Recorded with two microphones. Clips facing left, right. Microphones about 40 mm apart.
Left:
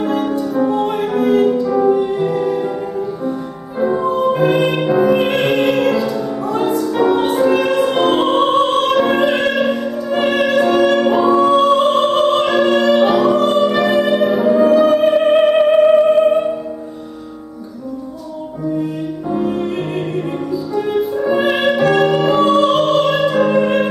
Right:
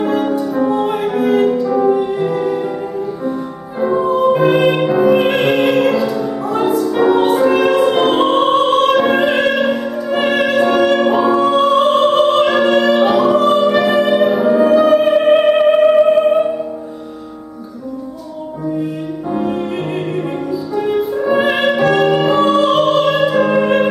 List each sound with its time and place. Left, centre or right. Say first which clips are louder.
0.0 s music: right 2 dB; centre
3.8 s music: right 2 dB; centre
20.7 s music: right 1 dB; centre